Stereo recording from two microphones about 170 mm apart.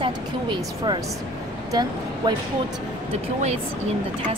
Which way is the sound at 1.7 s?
25° right (ahead or behind).